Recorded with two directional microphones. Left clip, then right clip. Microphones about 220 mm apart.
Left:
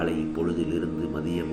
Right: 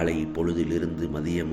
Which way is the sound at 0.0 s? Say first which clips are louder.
Right 1 dB; 30° right (ahead or behind).